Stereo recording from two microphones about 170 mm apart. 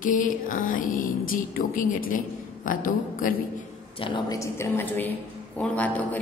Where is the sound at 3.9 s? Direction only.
30° left (ahead or behind).